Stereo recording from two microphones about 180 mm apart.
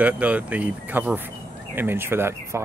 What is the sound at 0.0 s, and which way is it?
Speech, 10° right (ahead or behind).